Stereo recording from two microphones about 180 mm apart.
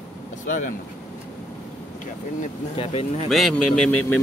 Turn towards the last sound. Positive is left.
turn(degrees=5)  # may be behind; listen again after turning